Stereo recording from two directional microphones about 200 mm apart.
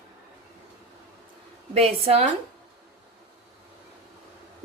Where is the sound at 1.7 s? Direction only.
30° right (ahead or behind).